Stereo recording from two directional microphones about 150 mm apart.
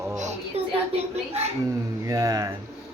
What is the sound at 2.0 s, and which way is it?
Speech, 20° right (ahead or behind).